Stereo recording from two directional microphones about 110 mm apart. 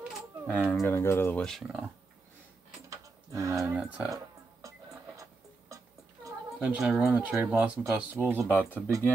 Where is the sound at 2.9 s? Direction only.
30° right (ahead or behind).